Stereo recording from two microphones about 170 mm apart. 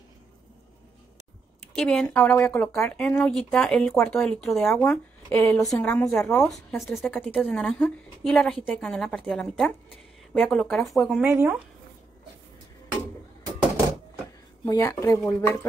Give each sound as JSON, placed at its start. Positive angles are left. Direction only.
{"t": 1.8, "sound": "a woman's voice", "side_deg": 5}
{"t": 4.8, "sound": "a woman's voice", "side_deg": 15}
{"t": 7.2, "sound": "a woman's voice", "side_deg": 10}
{"t": 14.6, "sound": "speech", "side_deg": 15}